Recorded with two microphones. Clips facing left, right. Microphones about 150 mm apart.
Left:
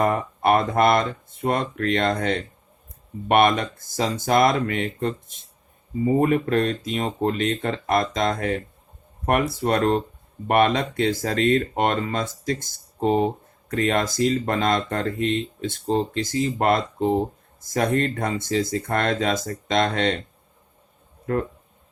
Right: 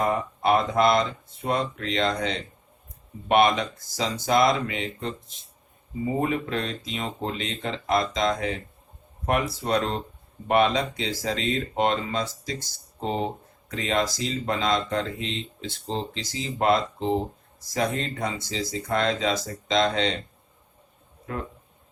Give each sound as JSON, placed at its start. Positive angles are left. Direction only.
{"t": 0.0, "sound": "speech", "side_deg": 55}
{"t": 6.1, "sound": "speech", "side_deg": 50}